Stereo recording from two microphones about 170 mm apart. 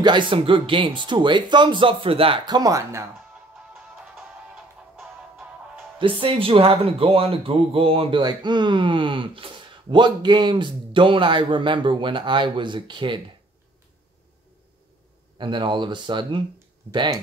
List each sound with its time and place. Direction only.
0.0 s speech: 30° right (ahead or behind)
4.9 s music: 5° right (ahead or behind)
5.9 s speech: 30° right (ahead or behind)
15.3 s speech: 30° right (ahead or behind)